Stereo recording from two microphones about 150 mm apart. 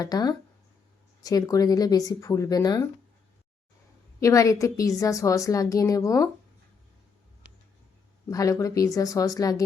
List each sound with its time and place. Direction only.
0.0 s a woman's voice: 25° left (ahead or behind)
4.2 s a woman's voice: 20° left (ahead or behind)
8.3 s a woman's voice: 20° left (ahead or behind)